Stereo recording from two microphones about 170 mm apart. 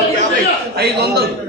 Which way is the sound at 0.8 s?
70° right (ahead or behind).